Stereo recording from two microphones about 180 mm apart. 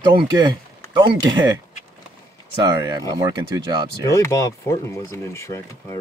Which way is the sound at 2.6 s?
20° right (ahead or behind).